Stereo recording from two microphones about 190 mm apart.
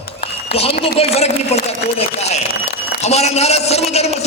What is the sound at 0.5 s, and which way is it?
A man's voice, 30° left (ahead or behind).